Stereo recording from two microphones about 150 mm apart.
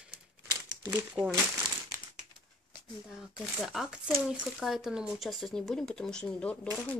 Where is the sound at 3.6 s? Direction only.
Centre (ahead or behind).